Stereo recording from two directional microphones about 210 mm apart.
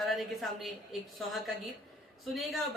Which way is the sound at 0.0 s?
Centre (ahead or behind).